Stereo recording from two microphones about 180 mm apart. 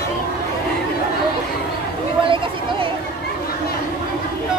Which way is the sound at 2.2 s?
30° right (ahead or behind).